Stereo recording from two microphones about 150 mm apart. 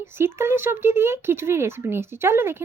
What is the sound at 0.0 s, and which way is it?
Speech, 15° right (ahead or behind).